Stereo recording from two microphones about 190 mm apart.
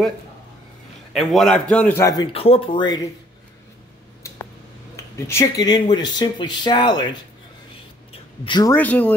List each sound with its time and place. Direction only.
1.1 s a man's voice: centre (ahead or behind)
2.3 s speech: 30° left (ahead or behind)
4.2 s a sound: 15° left (ahead or behind)
4.9 s speech: 15° left (ahead or behind)
8.1 s a sound: 25° left (ahead or behind)
8.7 s speech: 10° left (ahead or behind)